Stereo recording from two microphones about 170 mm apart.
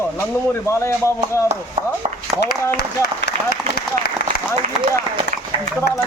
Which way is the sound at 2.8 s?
70° left (ahead or behind).